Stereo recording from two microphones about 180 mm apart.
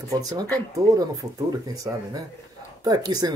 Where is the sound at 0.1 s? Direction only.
20° right (ahead or behind).